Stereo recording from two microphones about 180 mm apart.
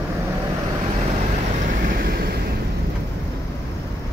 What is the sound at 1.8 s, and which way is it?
Vehicle, 55° right (ahead or behind).